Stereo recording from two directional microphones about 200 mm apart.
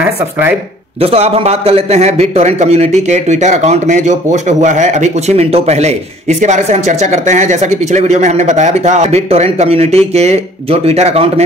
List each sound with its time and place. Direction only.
0.0 s speech: 10° right (ahead or behind)
0.9 s a man's voice: 30° right (ahead or behind)